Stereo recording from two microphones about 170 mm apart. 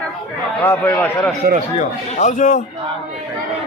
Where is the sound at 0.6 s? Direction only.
10° left (ahead or behind).